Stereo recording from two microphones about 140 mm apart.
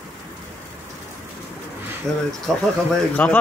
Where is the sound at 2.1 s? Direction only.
Centre (ahead or behind).